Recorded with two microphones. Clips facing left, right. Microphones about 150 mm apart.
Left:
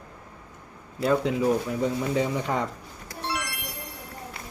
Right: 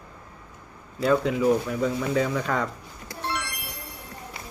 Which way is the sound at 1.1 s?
30° left (ahead or behind).